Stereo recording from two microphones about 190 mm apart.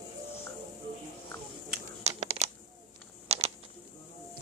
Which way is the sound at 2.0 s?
35° right (ahead or behind).